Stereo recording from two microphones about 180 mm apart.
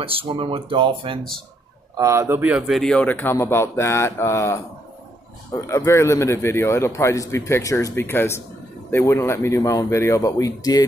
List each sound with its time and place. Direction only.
0.0 s speech: 30° right (ahead or behind)
2.0 s a man's voice: 15° right (ahead or behind); by 4.6 s 15° left (ahead or behind)
5.7 s a man's voice: 15° left (ahead or behind)